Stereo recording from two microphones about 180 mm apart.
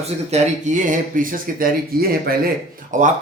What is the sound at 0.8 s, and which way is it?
Speech, 45° right (ahead or behind).